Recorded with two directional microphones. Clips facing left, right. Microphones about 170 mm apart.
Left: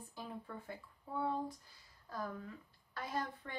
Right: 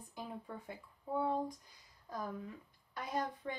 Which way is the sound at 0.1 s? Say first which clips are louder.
Right 2 dB; 20° right (ahead or behind).